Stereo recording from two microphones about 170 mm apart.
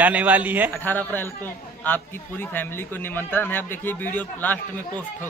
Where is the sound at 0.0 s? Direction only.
10° right (ahead or behind).